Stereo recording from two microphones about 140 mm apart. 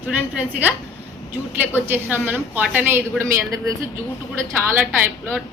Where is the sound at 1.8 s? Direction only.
15° right (ahead or behind).